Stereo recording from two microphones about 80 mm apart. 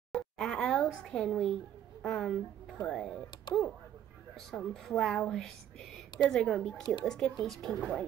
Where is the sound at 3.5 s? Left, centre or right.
Left.